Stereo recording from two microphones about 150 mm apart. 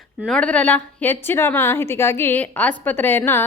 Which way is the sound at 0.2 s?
5° left (ahead or behind).